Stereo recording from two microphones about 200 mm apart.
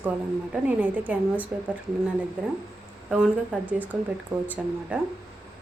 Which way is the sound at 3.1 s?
5° right (ahead or behind).